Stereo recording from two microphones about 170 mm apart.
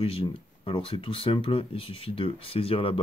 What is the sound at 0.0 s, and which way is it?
Speech, 35° left (ahead or behind).